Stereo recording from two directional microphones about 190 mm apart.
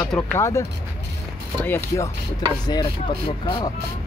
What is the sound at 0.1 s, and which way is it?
A man's voice, 10° left (ahead or behind).